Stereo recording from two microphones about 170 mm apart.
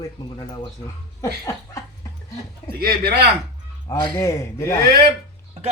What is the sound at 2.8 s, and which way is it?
Speech, 70° right (ahead or behind).